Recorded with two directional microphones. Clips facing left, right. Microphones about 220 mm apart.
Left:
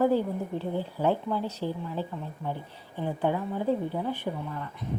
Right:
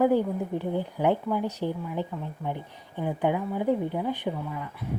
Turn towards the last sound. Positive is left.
turn(degrees=-10)  # may be behind; listen again after turning